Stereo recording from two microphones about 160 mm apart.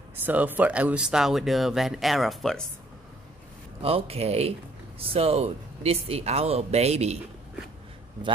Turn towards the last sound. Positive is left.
turn(degrees=-40)  # may be behind; listen again after turning